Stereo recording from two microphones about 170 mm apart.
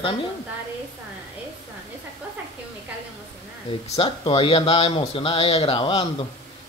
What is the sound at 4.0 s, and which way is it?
Speech, 30° left (ahead or behind).